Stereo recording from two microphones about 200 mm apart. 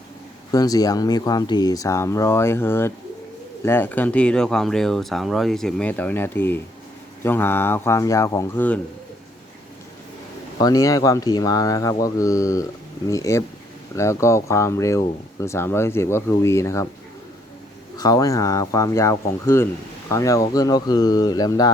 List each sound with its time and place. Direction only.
0.5 s speech: 20° left (ahead or behind)
10.6 s speech: 20° left (ahead or behind)
17.9 s speech: 20° left (ahead or behind)